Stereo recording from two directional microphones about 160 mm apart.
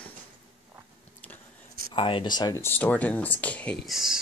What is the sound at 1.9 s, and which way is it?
Speech, 30° left (ahead or behind).